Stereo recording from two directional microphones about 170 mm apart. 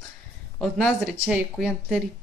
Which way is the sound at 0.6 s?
Centre (ahead or behind).